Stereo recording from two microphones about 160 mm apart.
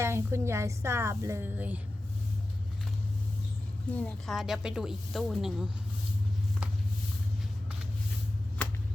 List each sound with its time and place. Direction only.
0.0 s a woman's voice: 15° right (ahead or behind)
3.9 s a woman's voice: 5° left (ahead or behind)